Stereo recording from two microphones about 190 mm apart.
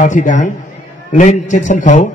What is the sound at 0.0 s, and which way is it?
A man's voice, 45° left (ahead or behind).